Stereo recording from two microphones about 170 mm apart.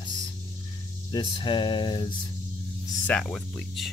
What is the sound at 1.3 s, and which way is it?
Speech, 30° left (ahead or behind).